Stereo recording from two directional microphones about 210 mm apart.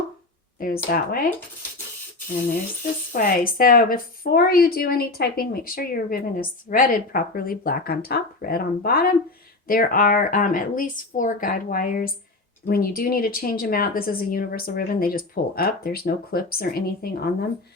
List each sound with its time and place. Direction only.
0.6 s a woman's voice: 45° left (ahead or behind)
3.1 s a woman's voice: 40° left (ahead or behind)